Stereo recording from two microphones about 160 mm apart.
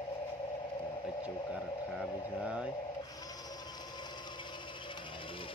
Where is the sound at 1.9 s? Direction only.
5° right (ahead or behind).